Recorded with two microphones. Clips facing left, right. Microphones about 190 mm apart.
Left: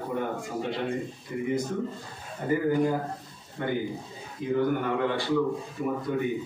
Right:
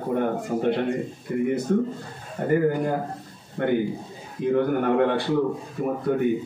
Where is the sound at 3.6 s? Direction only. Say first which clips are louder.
Right 6 dB; 55° right (ahead or behind).